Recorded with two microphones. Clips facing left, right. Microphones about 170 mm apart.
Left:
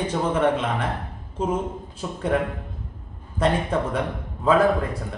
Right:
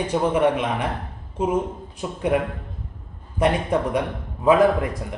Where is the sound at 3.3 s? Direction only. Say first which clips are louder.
Right 2 dB; 15° right (ahead or behind).